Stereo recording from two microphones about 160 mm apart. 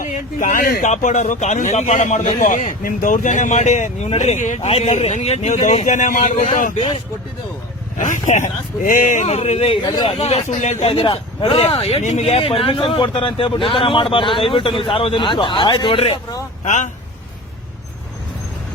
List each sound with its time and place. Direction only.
0.0 s speech: 55° left (ahead or behind)
7.9 s speech: 50° left (ahead or behind)
9.8 s speech: 25° left (ahead or behind)
10.1 s speech: 40° left (ahead or behind)
16.6 s speech: 50° left (ahead or behind)